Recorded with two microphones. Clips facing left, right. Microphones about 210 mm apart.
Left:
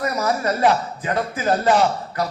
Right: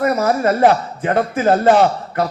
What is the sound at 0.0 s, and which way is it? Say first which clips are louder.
A man's voice: right 6 dB; 50° right (ahead or behind).